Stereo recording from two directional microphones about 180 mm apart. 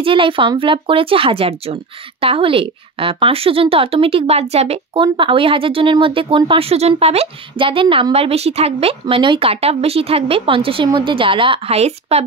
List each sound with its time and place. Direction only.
0.0 s speech: 30° right (ahead or behind)